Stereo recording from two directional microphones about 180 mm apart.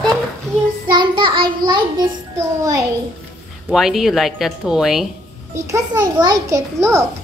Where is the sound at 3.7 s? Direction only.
Centre (ahead or behind).